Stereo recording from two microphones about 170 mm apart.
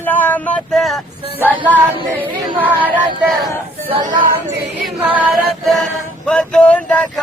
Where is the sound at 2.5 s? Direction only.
5° right (ahead or behind).